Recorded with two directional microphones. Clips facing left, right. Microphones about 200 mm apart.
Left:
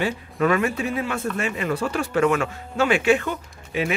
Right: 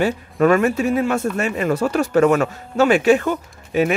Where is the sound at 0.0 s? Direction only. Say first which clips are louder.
Right 6 dB; 45° right (ahead or behind).